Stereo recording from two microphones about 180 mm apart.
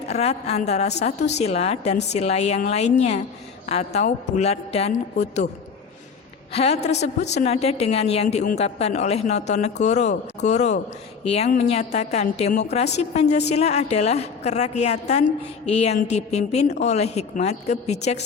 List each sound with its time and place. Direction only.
0.1 s a woman's voice: 35° left (ahead or behind)
6.5 s a woman's voice: 35° left (ahead or behind)